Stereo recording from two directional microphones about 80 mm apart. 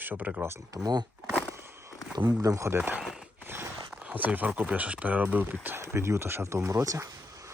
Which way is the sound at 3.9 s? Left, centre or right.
Centre.